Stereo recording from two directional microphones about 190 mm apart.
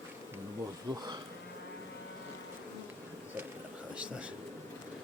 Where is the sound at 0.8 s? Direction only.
20° right (ahead or behind).